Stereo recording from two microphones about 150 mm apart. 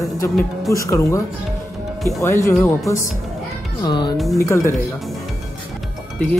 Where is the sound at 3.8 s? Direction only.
30° left (ahead or behind).